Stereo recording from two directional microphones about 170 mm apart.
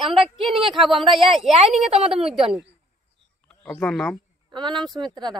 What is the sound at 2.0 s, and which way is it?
Speech, 35° right (ahead or behind).